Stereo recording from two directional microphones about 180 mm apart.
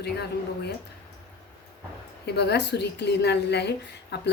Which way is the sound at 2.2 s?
70° left (ahead or behind).